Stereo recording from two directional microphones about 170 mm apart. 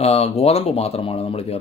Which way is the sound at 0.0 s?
35° left (ahead or behind).